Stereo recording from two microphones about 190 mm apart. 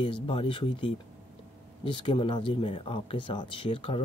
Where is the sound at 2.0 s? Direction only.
25° left (ahead or behind).